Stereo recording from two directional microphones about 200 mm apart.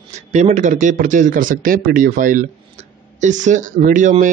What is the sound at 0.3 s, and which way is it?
A man's voice, 35° right (ahead or behind).